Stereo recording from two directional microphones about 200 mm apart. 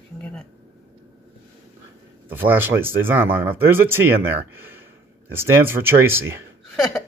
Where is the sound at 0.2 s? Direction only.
5° left (ahead or behind).